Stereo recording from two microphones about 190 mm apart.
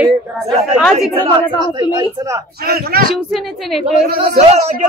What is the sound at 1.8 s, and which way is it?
Speech, 25° right (ahead or behind).